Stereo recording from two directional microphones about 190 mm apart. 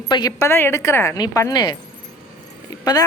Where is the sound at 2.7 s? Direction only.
20° left (ahead or behind).